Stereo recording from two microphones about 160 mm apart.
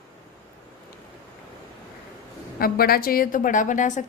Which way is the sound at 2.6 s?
70° left (ahead or behind).